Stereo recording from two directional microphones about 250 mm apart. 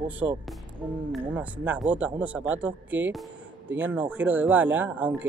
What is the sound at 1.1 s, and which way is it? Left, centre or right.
Speech, centre.